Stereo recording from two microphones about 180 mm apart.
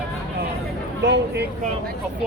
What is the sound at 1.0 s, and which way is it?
Speech, 75° right (ahead or behind).